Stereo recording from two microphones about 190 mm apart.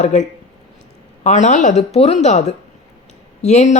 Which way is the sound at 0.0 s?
35° left (ahead or behind).